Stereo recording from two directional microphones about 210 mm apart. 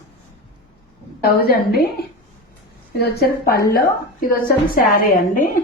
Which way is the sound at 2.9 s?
50° left (ahead or behind).